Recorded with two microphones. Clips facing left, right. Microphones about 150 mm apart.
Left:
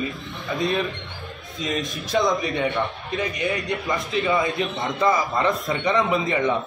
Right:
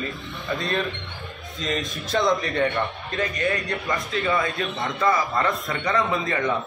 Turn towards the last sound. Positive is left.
turn(degrees=15)  # may be behind; listen again after turning